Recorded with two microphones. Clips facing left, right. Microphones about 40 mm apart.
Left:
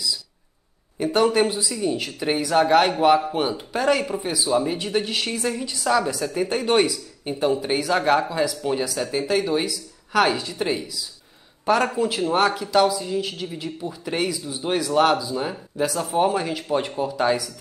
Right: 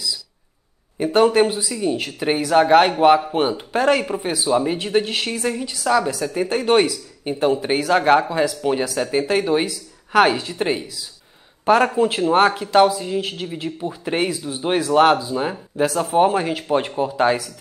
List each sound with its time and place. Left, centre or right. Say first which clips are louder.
0.9 s speech: right 4 dB; centre